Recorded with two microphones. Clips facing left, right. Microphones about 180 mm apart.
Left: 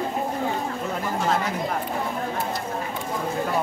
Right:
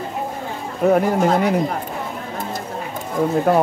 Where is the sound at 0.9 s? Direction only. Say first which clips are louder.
Right 15 dB; 65° right (ahead or behind).